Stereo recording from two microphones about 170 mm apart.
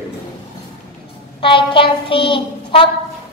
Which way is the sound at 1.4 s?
30° left (ahead or behind).